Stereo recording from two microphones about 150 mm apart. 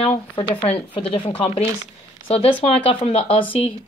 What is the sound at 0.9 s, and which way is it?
Speech, 40° left (ahead or behind).